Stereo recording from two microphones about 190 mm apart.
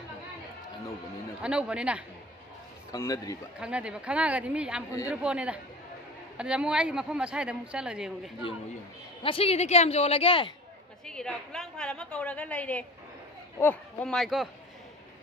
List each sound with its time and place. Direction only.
1.4 s a woman's voice: 5° right (ahead or behind)
2.9 s a man's voice: 20° left (ahead or behind)
3.5 s a woman's voice: 5° right (ahead or behind)
9.2 s a woman's voice: 30° left (ahead or behind)
11.1 s a woman's voice: 5° left (ahead or behind)